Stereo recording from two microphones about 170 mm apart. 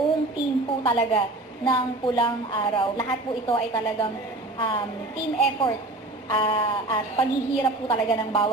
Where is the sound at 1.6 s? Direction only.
15° left (ahead or behind).